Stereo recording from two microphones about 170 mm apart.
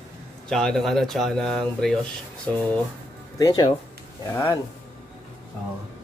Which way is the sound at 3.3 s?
25° left (ahead or behind).